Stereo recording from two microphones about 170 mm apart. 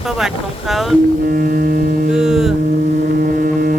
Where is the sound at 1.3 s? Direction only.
60° right (ahead or behind).